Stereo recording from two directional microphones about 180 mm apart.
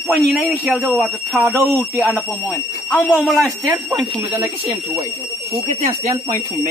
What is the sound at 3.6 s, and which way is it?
Speech, 10° right (ahead or behind).